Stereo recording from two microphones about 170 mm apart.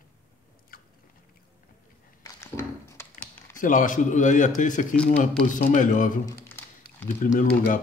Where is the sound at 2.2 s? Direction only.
15° left (ahead or behind).